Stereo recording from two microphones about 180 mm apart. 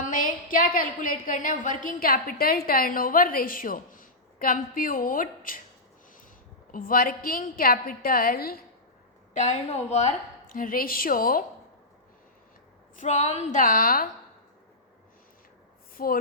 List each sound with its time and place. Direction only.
0.0 s a woman's voice: 45° left (ahead or behind)
6.7 s a woman's voice: 50° left (ahead or behind)
9.3 s a woman's voice: 40° left (ahead or behind)
13.0 s a woman's voice: 40° left (ahead or behind)
16.0 s a woman's voice: 50° left (ahead or behind)